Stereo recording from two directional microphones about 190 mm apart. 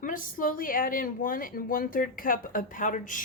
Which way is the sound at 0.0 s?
45° left (ahead or behind).